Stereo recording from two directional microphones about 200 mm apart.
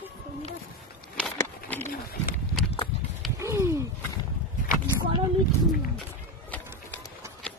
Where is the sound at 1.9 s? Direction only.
45° left (ahead or behind).